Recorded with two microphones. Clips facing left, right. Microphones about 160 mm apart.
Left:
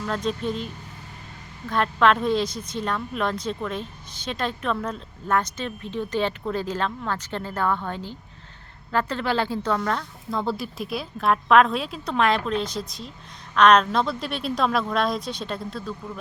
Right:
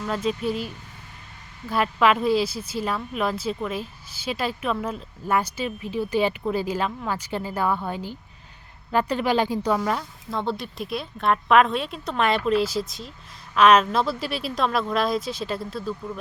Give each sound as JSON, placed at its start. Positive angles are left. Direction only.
{"t": 0.1, "sound": "a woman's voice", "side_deg": -5}
{"t": 10.4, "sound": "speech", "side_deg": 0}